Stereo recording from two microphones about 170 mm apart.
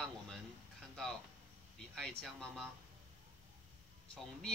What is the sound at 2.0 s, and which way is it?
Speech, 5° left (ahead or behind).